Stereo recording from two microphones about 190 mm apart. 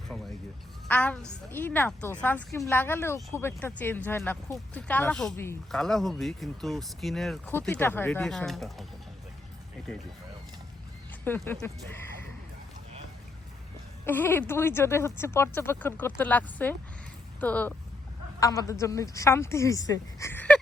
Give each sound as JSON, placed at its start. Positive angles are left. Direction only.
{"t": 0.1, "sound": "speech", "side_deg": 5}
{"t": 11.2, "sound": "speech", "side_deg": 10}
{"t": 14.0, "sound": "speech", "side_deg": 10}